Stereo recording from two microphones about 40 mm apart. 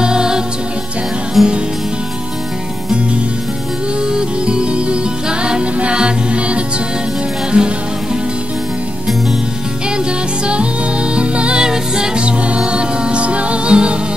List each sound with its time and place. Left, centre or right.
0.0 s music: centre
1.4 s music: centre
4.1 s music: right
10.4 s music: right
11.6 s music: centre